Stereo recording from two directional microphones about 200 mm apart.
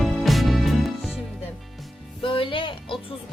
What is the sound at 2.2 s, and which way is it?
Speech, 25° left (ahead or behind).